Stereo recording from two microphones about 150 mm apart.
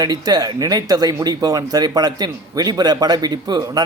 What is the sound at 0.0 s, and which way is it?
A man's voice, 25° right (ahead or behind).